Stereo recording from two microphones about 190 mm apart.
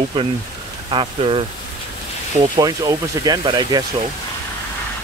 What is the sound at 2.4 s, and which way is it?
Speech, 20° right (ahead or behind).